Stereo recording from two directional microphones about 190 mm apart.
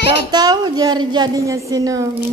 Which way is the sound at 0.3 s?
20° right (ahead or behind).